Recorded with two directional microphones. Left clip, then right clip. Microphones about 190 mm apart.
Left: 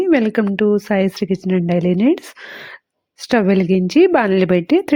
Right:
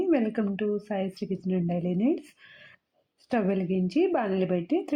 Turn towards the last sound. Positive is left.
turn(degrees=40)  # may be behind; listen again after turning